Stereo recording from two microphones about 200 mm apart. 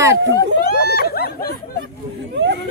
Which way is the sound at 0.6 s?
50° left (ahead or behind).